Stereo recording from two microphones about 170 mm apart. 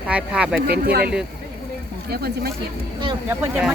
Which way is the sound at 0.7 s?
65° right (ahead or behind).